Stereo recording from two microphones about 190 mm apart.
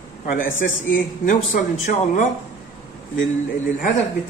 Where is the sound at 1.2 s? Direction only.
40° left (ahead or behind).